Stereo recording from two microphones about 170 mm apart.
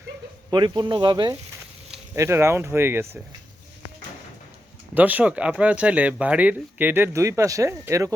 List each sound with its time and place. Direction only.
0.5 s speech: 25° right (ahead or behind)
4.9 s speech: 10° right (ahead or behind)